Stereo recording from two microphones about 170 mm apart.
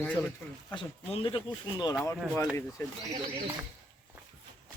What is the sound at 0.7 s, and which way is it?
Speech, 30° left (ahead or behind).